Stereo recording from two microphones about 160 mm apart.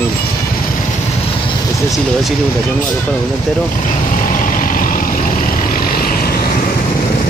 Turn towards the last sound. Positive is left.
turn(degrees=70)  # may be behind; listen again after turning